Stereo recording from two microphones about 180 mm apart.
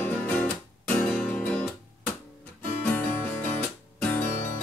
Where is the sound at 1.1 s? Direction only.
10° left (ahead or behind).